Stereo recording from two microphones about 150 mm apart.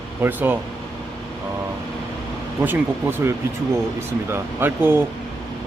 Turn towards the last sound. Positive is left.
turn(degrees=-15)  # may be behind; listen again after turning